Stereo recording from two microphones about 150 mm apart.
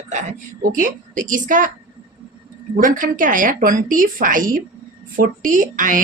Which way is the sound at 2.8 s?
65° right (ahead or behind).